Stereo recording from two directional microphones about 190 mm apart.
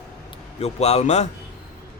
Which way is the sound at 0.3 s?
35° left (ahead or behind).